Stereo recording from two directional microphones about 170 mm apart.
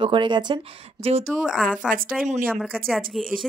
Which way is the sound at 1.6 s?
55° right (ahead or behind).